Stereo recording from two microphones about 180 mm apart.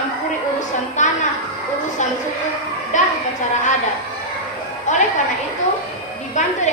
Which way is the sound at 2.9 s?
45° left (ahead or behind).